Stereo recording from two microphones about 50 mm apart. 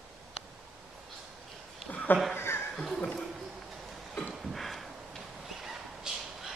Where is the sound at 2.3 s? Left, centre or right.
Left.